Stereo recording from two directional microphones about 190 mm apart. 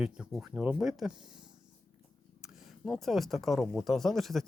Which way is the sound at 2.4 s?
Centre (ahead or behind).